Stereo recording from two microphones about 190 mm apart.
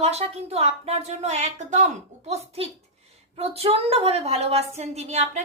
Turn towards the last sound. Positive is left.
turn(degrees=-35)  # may be behind; listen again after turning